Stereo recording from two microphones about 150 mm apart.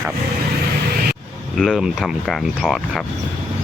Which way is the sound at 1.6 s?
Centre (ahead or behind).